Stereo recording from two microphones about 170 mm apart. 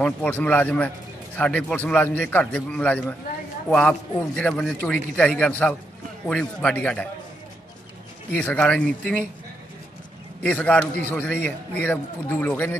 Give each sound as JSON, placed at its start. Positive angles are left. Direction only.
{"t": 0.0, "sound": "a man's voice", "side_deg": 10}
{"t": 4.4, "sound": "a man's voice", "side_deg": 5}
{"t": 8.4, "sound": "a man's voice", "side_deg": 10}
{"t": 10.4, "sound": "a man's voice", "side_deg": 5}